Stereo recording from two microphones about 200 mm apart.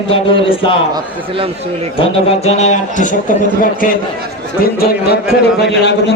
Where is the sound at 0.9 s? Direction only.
25° right (ahead or behind).